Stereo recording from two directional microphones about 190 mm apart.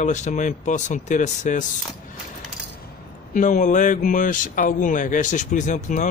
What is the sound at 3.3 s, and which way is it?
Speech, 45° left (ahead or behind).